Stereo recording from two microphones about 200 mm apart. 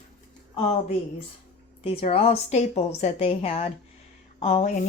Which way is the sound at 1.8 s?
30° left (ahead or behind).